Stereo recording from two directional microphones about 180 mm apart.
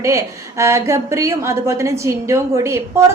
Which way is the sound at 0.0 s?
15° right (ahead or behind).